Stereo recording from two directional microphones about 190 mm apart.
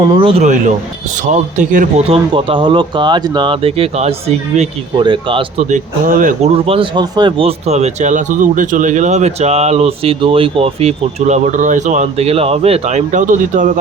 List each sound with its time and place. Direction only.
0.1 s speech: 30° right (ahead or behind)
2.1 s speech: 25° right (ahead or behind)
5.7 s speech: 45° right (ahead or behind)
6.7 s speech: 25° right (ahead or behind); by 13.7 s 40° right (ahead or behind)